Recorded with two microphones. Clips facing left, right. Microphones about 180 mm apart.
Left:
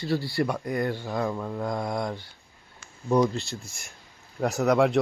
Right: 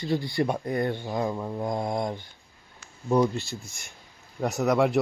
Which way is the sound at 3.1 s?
5° right (ahead or behind).